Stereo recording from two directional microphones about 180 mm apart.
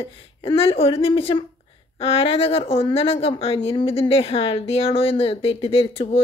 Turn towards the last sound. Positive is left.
turn(degrees=30)  # may be behind; listen again after turning